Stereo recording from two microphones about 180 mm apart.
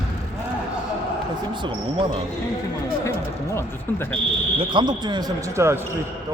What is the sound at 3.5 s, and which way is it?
Speech, 15° left (ahead or behind).